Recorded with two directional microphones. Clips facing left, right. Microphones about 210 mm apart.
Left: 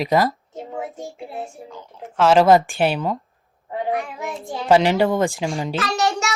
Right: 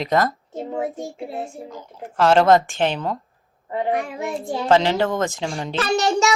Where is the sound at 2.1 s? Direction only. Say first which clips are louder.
Left 1 dB; 5° left (ahead or behind).